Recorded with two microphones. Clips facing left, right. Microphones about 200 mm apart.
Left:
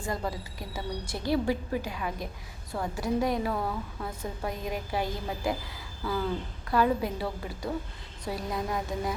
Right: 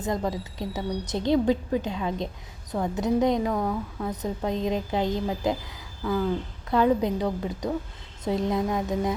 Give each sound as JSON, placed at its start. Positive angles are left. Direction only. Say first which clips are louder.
{"t": 0.3, "sound": "a woman's voice", "louder": "right 6 dB", "side_deg": -20}
{"t": 3.5, "sound": "speech", "louder": "right 5 dB", "side_deg": 0}
{"t": 4.0, "sound": "a woman's voice", "louder": "right 6 dB", "side_deg": -20}
{"t": 6.0, "sound": "a sound", "louder": "right 5 dB", "side_deg": 0}
{"t": 6.7, "sound": "a woman's voice", "louder": "right 4 dB", "side_deg": -20}